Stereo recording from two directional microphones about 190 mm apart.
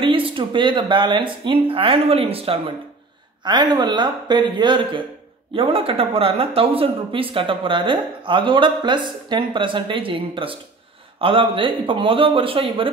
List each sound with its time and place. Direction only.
0.0 s speech: 25° right (ahead or behind)